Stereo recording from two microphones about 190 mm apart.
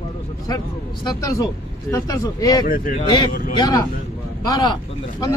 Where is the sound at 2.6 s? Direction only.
45° left (ahead or behind).